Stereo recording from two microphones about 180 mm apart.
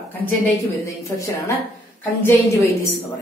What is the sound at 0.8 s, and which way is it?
Speech, 15° left (ahead or behind).